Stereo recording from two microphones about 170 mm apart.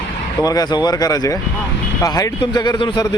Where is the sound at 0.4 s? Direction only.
25° left (ahead or behind).